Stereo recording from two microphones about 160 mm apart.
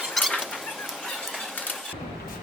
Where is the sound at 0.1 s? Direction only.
Centre (ahead or behind).